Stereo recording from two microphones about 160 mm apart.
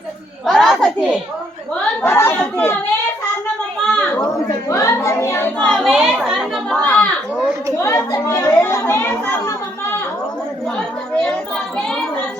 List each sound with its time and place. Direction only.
0.4 s a sound: centre (ahead or behind)
1.8 s chatter: 10° left (ahead or behind)
3.8 s children playing: 10° left (ahead or behind)
4.2 s chatter: 20° left (ahead or behind)
5.5 s chatter: 5° left (ahead or behind)
7.8 s chatter: 20° left (ahead or behind)
10.8 s chatter: 5° left (ahead or behind)